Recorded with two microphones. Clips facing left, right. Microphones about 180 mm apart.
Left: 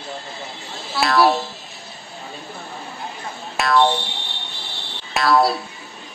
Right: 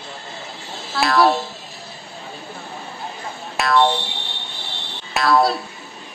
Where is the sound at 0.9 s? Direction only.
Centre (ahead or behind).